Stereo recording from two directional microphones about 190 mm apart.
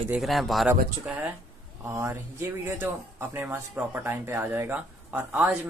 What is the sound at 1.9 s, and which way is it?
Speech, 10° right (ahead or behind).